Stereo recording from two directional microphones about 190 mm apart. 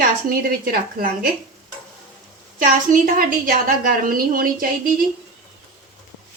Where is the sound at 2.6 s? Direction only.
45° right (ahead or behind).